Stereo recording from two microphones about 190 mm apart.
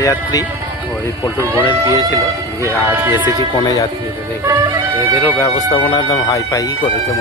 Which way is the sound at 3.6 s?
20° left (ahead or behind).